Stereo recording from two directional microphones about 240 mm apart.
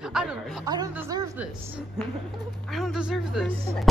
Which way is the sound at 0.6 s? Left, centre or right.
Centre.